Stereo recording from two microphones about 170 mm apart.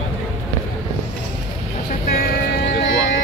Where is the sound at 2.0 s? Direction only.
65° left (ahead or behind).